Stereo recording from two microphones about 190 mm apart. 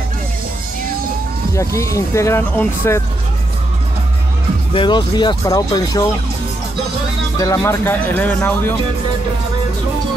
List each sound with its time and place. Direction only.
1.5 s speech: 15° left (ahead or behind)
4.7 s speech: 25° left (ahead or behind)
7.3 s speech: 20° left (ahead or behind)